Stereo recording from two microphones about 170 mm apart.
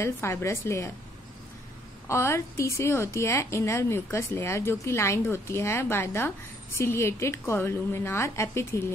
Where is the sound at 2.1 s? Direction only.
15° left (ahead or behind).